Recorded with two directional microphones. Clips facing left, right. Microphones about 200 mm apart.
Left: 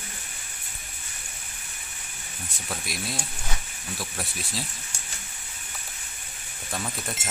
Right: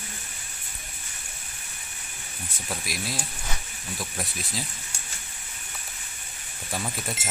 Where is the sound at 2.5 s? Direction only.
Centre (ahead or behind).